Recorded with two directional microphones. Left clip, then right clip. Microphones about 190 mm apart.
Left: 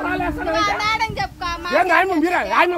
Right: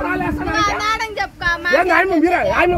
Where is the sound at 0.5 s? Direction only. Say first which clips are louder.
Right 2 dB; 10° right (ahead or behind).